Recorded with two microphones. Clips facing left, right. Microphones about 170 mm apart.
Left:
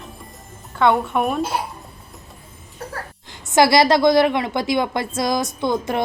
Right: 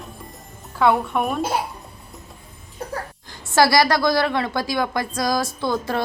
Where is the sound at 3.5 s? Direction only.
20° left (ahead or behind).